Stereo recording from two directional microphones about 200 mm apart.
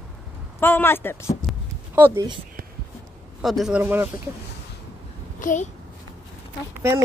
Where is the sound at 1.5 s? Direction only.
10° right (ahead or behind).